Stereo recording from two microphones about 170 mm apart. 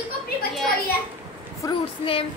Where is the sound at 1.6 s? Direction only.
30° left (ahead or behind).